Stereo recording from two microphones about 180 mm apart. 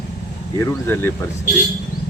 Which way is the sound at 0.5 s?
15° left (ahead or behind).